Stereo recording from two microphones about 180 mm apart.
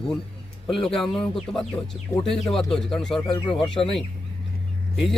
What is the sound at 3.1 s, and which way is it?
Speech, 30° left (ahead or behind).